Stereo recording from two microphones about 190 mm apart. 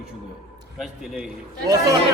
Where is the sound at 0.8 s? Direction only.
Centre (ahead or behind).